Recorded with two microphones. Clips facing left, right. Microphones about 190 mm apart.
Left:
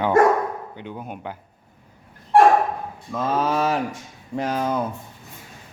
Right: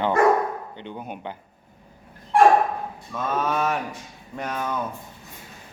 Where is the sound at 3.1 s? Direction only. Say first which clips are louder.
Left 3 dB; 30° left (ahead or behind).